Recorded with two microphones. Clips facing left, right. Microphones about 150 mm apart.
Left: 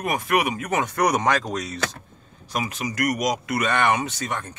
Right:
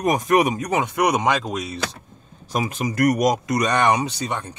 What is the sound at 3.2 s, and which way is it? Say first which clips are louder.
A man's voice: right 5 dB; 45° right (ahead or behind).